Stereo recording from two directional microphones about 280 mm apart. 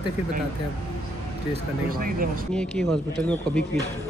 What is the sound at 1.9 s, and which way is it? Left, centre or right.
Speech, right.